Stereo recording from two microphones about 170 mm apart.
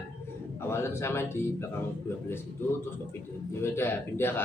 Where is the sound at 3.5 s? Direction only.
15° left (ahead or behind).